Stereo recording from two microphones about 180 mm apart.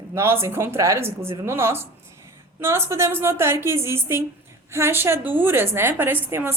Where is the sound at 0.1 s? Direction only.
15° right (ahead or behind).